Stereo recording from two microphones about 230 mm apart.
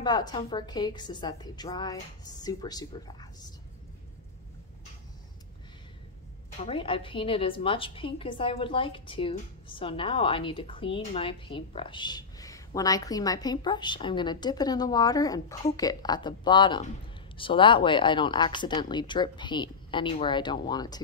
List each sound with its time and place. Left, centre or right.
0.0 s a woman's voice: centre
6.6 s a woman's voice: left